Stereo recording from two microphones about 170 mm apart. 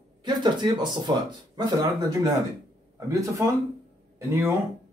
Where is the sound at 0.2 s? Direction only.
25° right (ahead or behind).